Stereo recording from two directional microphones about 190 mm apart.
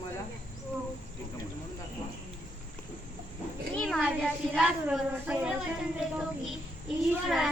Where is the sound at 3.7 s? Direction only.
Centre (ahead or behind).